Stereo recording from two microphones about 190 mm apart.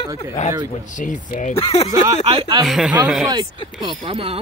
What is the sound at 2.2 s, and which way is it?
Speech, 30° right (ahead or behind).